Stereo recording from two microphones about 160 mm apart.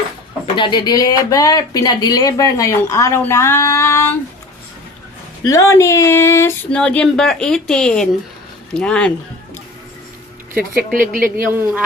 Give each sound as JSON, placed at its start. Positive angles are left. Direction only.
{"t": 0.4, "sound": "speech", "side_deg": 30}
{"t": 5.4, "sound": "speech", "side_deg": 20}
{"t": 10.8, "sound": "speech", "side_deg": -60}
{"t": 11.4, "sound": "a man's voice", "side_deg": -15}